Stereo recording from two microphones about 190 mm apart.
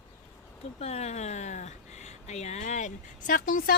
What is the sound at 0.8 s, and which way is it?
Speech, 35° left (ahead or behind).